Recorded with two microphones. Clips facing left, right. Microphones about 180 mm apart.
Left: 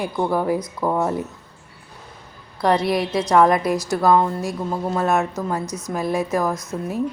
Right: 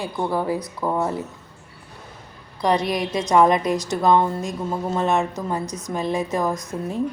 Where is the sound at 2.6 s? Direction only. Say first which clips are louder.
Left 2 dB; 15° right (ahead or behind).